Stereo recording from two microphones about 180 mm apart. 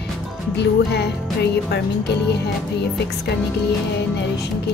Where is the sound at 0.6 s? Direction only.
70° left (ahead or behind).